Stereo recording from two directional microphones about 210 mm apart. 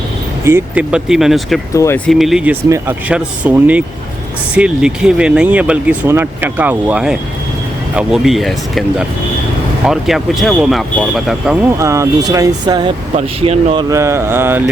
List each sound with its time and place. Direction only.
0.4 s speech: 10° right (ahead or behind)
1.7 s speech: 15° left (ahead or behind)
2.0 s speech: centre (ahead or behind)
11.8 s speech: 15° right (ahead or behind)
13.9 s speech: 15° right (ahead or behind)